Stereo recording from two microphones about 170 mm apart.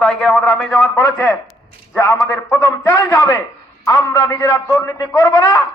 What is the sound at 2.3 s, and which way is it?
A man's voice, 15° left (ahead or behind).